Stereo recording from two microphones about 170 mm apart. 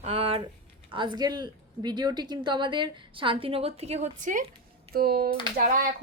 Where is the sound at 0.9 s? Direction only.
30° right (ahead or behind); by 4.4 s 50° right (ahead or behind).